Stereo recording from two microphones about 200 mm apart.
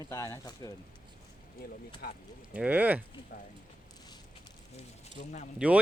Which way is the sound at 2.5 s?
5° right (ahead or behind).